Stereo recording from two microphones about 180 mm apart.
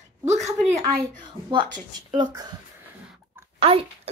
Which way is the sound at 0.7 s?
20° right (ahead or behind).